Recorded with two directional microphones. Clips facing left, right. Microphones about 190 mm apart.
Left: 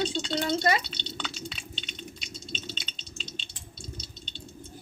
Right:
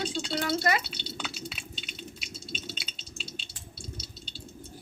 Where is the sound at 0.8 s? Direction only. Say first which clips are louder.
Even; 5° right (ahead or behind).